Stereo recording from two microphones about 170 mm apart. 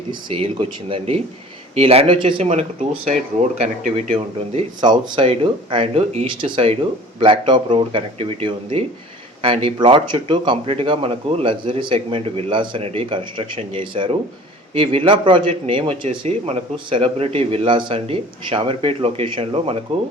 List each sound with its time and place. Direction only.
0.1 s speech: 30° right (ahead or behind)